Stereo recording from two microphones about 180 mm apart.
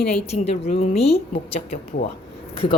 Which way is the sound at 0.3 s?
35° left (ahead or behind).